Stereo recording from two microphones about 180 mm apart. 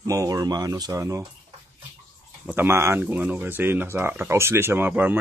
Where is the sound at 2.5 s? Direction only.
10° right (ahead or behind).